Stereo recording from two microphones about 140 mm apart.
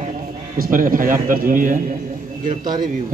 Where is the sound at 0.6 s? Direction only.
85° right.